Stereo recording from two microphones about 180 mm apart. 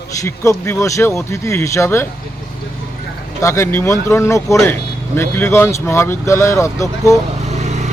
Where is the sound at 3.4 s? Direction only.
15° left (ahead or behind).